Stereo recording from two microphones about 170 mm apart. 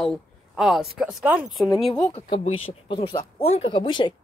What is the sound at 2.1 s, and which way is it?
Speech, 35° left (ahead or behind).